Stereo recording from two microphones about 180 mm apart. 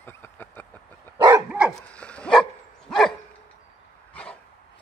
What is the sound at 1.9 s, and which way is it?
Dog, 5° left (ahead or behind).